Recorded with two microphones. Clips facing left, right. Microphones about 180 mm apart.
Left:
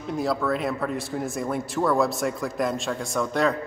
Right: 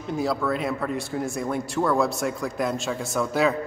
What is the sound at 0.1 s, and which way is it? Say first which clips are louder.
A man's voice: even; centre (ahead or behind).